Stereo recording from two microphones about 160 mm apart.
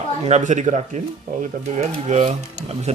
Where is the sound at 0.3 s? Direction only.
45° right (ahead or behind).